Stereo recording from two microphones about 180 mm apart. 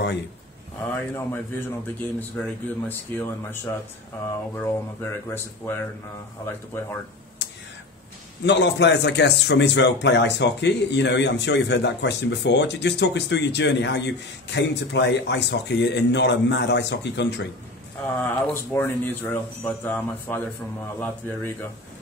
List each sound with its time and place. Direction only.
0.8 s speech: 10° left (ahead or behind)
4.6 s speech: 10° left (ahead or behind)
8.5 s speech: 75° left (ahead or behind)
18.0 s speech: 10° left (ahead or behind)